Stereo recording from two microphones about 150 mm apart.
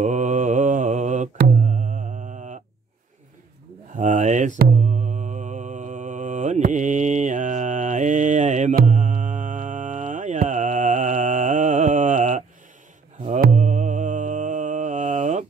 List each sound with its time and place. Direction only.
0.0 s mantra: 55° right (ahead or behind)
3.9 s a sound: 60° right (ahead or behind)
4.6 s mantra: 60° right (ahead or behind)